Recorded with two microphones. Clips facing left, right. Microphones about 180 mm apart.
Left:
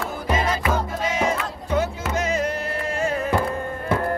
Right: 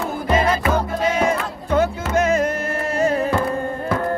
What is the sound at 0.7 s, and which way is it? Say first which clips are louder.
Music: right 4 dB; 55° right (ahead or behind).